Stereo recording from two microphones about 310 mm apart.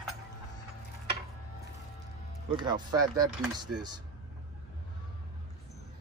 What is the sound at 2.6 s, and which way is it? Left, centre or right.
Speech, centre.